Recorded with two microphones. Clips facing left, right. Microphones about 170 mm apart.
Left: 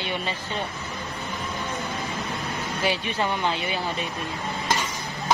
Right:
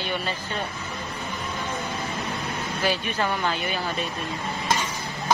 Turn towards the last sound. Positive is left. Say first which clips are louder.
# even
turn(degrees=25)  # may be behind; listen again after turning